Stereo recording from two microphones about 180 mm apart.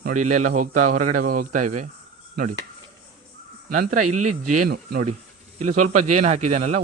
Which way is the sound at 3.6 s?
55° right (ahead or behind).